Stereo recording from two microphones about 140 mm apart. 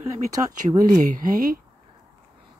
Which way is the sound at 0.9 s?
75° right (ahead or behind).